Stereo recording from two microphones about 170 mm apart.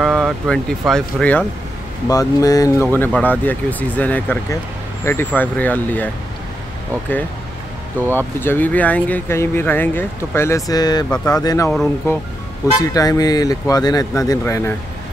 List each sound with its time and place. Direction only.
0.0 s speech: centre (ahead or behind)
2.0 s speech: 20° left (ahead or behind)
8.4 s speech: 10° left (ahead or behind)